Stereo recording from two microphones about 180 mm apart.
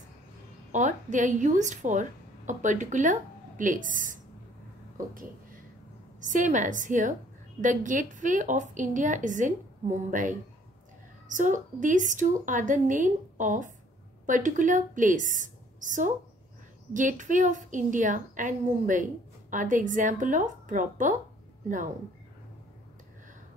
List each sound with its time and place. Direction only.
0.7 s speech: 45° right (ahead or behind)
6.2 s a woman's voice: 45° right (ahead or behind)